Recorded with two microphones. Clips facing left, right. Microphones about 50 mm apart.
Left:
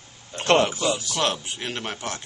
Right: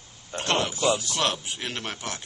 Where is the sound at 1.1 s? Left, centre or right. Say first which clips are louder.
Left 2 dB; centre.